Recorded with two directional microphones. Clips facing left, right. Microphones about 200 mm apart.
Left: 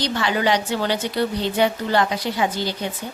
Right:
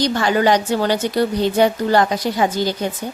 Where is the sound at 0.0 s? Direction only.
45° right (ahead or behind).